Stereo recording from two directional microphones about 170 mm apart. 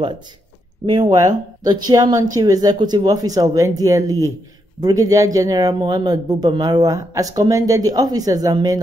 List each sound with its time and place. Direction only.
0.8 s a man's voice: 20° right (ahead or behind)